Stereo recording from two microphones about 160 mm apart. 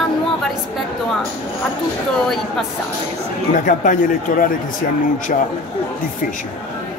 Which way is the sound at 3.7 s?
55° left (ahead or behind).